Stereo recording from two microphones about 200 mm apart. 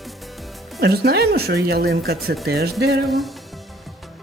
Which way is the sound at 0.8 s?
55° right (ahead or behind).